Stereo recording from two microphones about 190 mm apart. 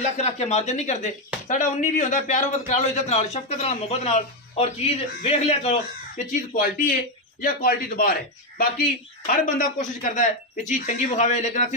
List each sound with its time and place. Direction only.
0.2 s speech: 35° left (ahead or behind)